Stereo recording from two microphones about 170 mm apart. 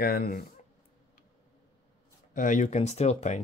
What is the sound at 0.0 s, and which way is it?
Speech, 60° left (ahead or behind).